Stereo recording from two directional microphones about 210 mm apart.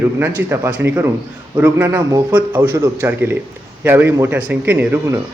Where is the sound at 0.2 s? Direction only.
10° right (ahead or behind).